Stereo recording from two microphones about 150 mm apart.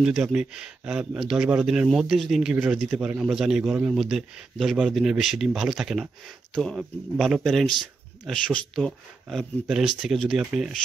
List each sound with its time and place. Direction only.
0.0 s speech: 5° right (ahead or behind)